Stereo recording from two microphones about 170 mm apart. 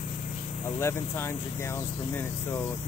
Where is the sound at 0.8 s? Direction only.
15° left (ahead or behind).